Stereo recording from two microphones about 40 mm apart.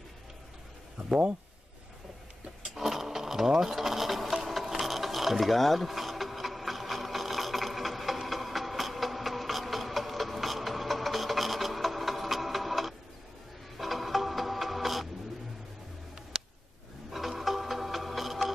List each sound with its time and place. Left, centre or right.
1.0 s speech: right
2.6 s sewing machine: centre
13.7 s music: centre
16.3 s a sound: centre
17.1 s music: centre